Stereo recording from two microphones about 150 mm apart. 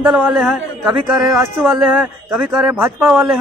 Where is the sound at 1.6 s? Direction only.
Centre (ahead or behind).